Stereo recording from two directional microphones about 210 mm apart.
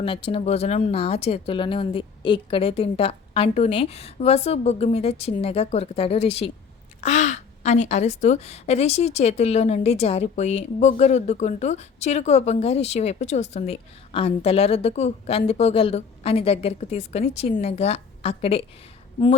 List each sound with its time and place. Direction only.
0.0 s a woman's voice: 25° left (ahead or behind)